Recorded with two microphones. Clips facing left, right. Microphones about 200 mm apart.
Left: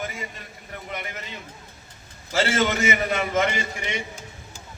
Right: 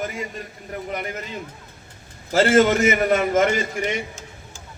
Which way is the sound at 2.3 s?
50° right (ahead or behind).